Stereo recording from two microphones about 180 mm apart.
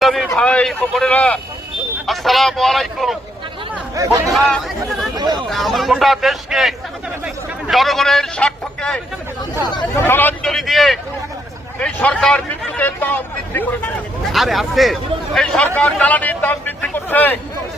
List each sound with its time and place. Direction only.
0.0 s a sound: centre (ahead or behind)
0.3 s a man's voice: 5° left (ahead or behind)
3.9 s chatter: 20° right (ahead or behind)
4.3 s speech: centre (ahead or behind)
5.1 s speech: 25° right (ahead or behind)
5.5 s a man's voice: centre (ahead or behind)
9.6 s speech: 25° left (ahead or behind)
10.0 s speech: 10° left (ahead or behind)
14.3 s speech: centre (ahead or behind)